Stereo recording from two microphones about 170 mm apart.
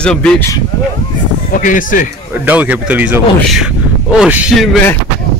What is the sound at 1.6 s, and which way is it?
Speech, 50° left (ahead or behind).